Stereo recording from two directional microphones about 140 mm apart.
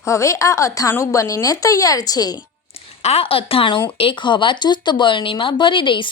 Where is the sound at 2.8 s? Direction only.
45° left (ahead or behind).